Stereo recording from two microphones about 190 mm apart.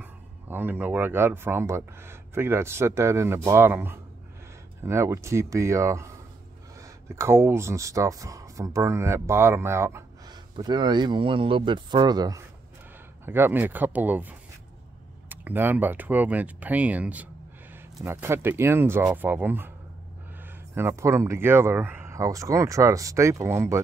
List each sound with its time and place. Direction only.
0.0 s speech: 10° right (ahead or behind)
20.7 s speech: 15° right (ahead or behind)